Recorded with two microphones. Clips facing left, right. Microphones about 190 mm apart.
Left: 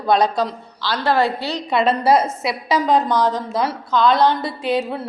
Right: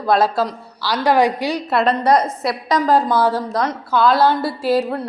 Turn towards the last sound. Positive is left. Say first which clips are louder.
# right 3 dB
turn(degrees=0)  # may be behind; listen again after turning